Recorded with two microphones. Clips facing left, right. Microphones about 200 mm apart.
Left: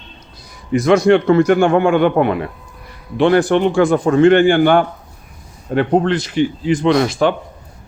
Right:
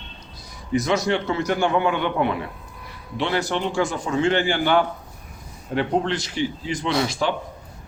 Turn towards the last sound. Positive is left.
turn(degrees=55)  # may be behind; listen again after turning